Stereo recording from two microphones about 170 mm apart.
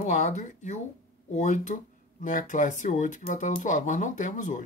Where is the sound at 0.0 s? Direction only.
45° left (ahead or behind).